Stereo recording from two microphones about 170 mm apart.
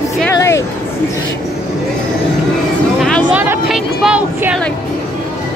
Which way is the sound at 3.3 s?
5° right (ahead or behind).